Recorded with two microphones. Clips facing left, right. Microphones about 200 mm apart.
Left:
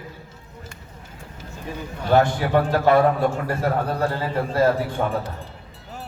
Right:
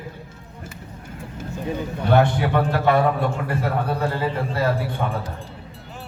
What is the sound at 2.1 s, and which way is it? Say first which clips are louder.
Speech: even; 60° right (ahead or behind).